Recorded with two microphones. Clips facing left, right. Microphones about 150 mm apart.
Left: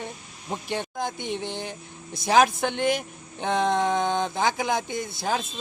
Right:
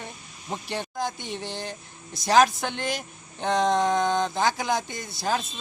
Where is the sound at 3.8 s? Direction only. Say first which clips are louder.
Right 1 dB; 20° left (ahead or behind).